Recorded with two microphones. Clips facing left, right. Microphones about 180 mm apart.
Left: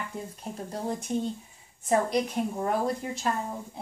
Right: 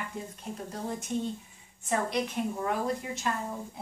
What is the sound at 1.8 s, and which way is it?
Speech, 40° left (ahead or behind).